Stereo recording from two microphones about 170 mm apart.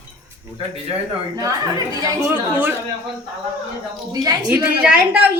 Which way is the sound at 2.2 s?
10° right (ahead or behind).